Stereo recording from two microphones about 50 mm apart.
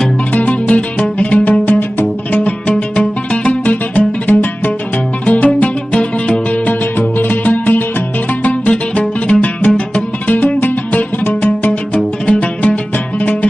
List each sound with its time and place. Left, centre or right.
0.3 s music: left
2.4 s music: left
7.0 s music: left